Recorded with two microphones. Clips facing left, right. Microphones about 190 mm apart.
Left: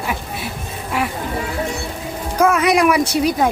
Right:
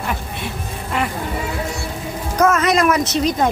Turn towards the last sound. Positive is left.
turn(degrees=10)  # may be behind; listen again after turning